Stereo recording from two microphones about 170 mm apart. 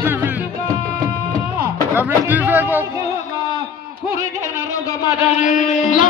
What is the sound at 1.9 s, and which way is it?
Speech, 10° right (ahead or behind).